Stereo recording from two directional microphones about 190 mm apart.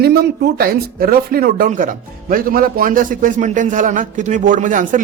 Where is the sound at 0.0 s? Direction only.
60° right (ahead or behind).